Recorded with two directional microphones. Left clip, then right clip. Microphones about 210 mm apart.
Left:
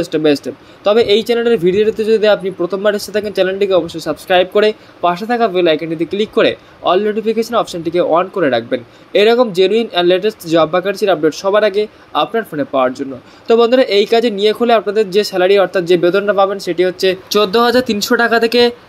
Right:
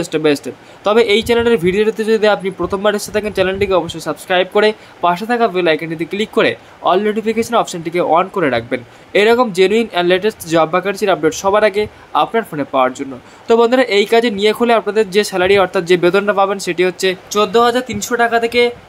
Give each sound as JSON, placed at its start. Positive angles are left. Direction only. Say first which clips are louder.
{"t": 0.1, "sound": "speech", "louder": "even", "side_deg": -5}
{"t": 17.3, "sound": "speech", "louder": "even", "side_deg": 20}